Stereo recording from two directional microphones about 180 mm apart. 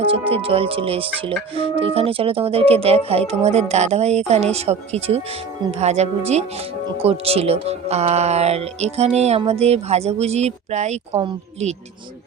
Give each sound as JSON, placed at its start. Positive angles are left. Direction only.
{"t": 0.0, "sound": "speech", "side_deg": -30}